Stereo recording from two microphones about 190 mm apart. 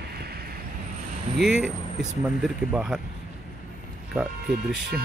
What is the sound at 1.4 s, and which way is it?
Speech, 5° right (ahead or behind).